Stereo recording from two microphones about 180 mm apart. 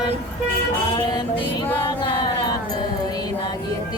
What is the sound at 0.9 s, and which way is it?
Music, 25° left (ahead or behind).